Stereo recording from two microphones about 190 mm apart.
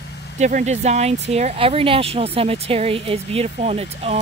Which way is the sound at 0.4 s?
40° right (ahead or behind).